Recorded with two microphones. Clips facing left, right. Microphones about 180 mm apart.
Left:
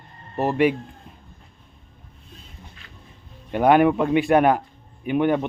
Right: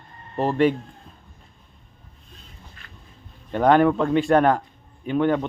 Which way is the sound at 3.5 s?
10° left (ahead or behind).